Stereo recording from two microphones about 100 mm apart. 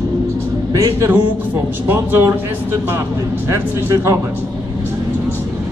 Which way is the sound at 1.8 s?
25° right (ahead or behind).